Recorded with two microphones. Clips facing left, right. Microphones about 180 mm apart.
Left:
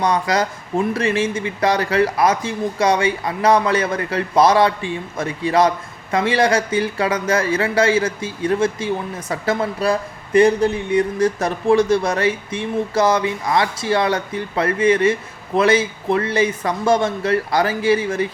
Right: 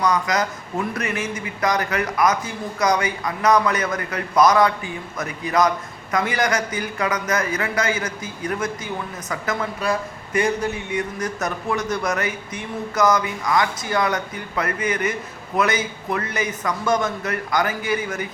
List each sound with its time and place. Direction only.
0.0 s speech: 30° left (ahead or behind)